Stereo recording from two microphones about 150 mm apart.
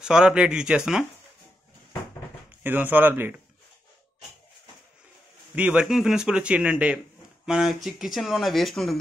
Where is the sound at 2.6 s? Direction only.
10° right (ahead or behind).